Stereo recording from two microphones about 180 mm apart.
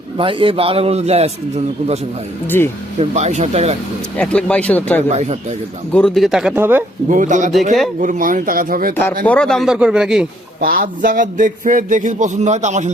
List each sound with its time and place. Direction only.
0.2 s a man's voice: 30° right (ahead or behind)
2.5 s speech: 10° left (ahead or behind)
3.0 s a man's voice: 40° right (ahead or behind)
4.2 s speech: 5° left (ahead or behind)
5.0 s a man's voice: 40° right (ahead or behind)
5.9 s a man's voice: 5° left (ahead or behind)
7.1 s a man's voice: 45° right (ahead or behind)
9.2 s a man's voice: 5° left (ahead or behind)
10.6 s a man's voice: 55° right (ahead or behind)